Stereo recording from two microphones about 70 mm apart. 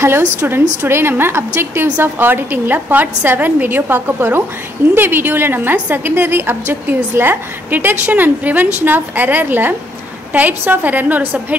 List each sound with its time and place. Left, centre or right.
0.5 s a woman's voice: right